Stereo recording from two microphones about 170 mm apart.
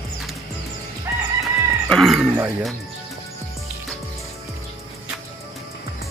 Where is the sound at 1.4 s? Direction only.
Centre (ahead or behind).